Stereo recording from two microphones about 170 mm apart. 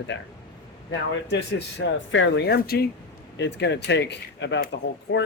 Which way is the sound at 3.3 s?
90° left.